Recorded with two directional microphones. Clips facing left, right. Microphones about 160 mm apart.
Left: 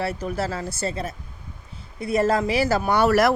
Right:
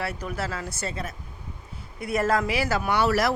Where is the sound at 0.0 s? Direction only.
30° left (ahead or behind).